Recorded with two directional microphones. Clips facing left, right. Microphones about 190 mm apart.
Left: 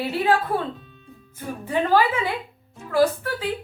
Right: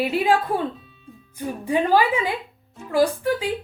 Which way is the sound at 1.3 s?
15° right (ahead or behind).